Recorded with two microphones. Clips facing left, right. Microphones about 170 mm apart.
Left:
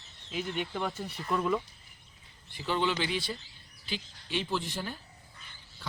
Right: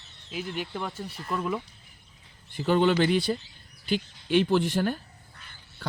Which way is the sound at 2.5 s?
50° right (ahead or behind).